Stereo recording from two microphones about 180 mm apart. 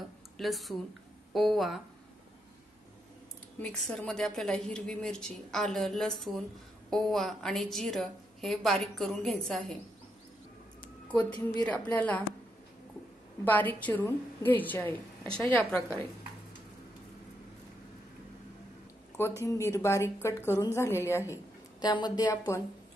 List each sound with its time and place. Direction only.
0.4 s a woman's voice: centre (ahead or behind)
3.6 s a woman's voice: 5° left (ahead or behind)
11.1 s a woman's voice: 10° left (ahead or behind)
13.5 s a woman's voice: 10° left (ahead or behind)
19.4 s a woman's voice: 15° left (ahead or behind)